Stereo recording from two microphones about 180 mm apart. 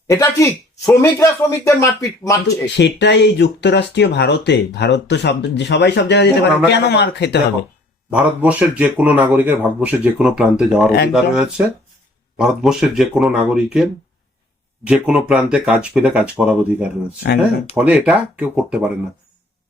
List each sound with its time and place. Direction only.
0.1 s speech: 15° left (ahead or behind)
2.7 s speech: 70° left (ahead or behind)
8.1 s speech: 5° right (ahead or behind)